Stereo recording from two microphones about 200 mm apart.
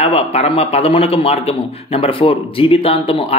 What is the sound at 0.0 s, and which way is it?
A man's voice, 30° left (ahead or behind).